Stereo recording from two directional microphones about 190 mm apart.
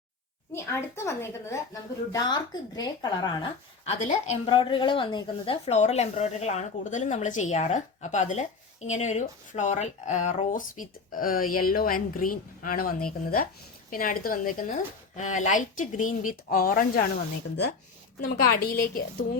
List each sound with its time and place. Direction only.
0.5 s speech: 15° left (ahead or behind); by 17.1 s 45° left (ahead or behind)
18.2 s speech: 50° left (ahead or behind)